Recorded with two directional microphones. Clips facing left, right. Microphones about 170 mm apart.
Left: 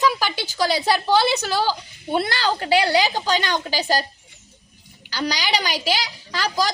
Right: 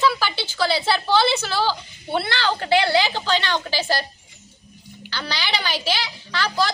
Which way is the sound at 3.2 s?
40° left (ahead or behind).